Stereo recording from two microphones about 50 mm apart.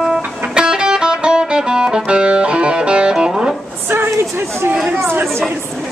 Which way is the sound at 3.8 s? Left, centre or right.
Right.